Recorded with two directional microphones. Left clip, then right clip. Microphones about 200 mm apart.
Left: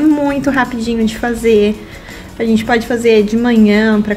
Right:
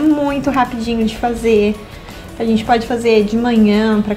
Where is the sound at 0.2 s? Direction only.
15° left (ahead or behind).